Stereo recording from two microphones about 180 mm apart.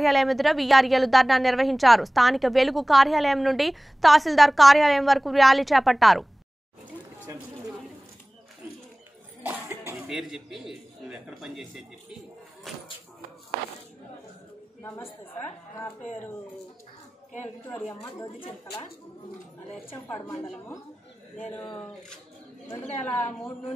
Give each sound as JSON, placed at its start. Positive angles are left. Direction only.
{"t": 0.0, "sound": "a woman's voice", "side_deg": 0}
{"t": 9.4, "sound": "cough", "side_deg": -10}
{"t": 10.0, "sound": "a woman's voice", "side_deg": -5}
{"t": 17.6, "sound": "speech", "side_deg": 15}
{"t": 20.4, "sound": "a woman's voice", "side_deg": 5}